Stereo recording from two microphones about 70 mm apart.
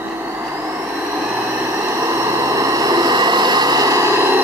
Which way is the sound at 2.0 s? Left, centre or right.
Right.